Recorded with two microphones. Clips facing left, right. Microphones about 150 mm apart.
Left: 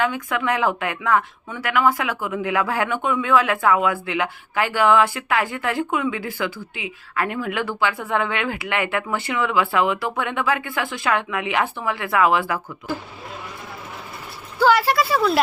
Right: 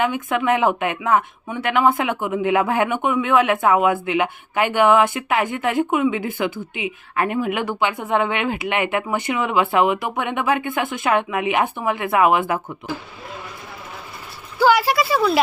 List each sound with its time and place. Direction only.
0.0 s speech: 20° right (ahead or behind)
14.6 s a woman's voice: centre (ahead or behind)